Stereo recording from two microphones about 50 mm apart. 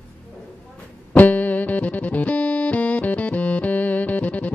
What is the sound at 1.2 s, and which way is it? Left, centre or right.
Music, left.